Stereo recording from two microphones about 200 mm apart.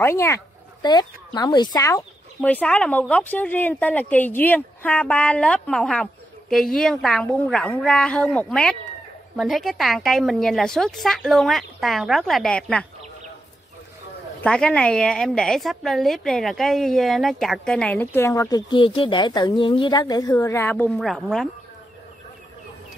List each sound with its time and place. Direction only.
0.0 s speech: 10° left (ahead or behind)
2.4 s a woman's voice: 5° left (ahead or behind)
14.4 s a woman's voice: 5° left (ahead or behind)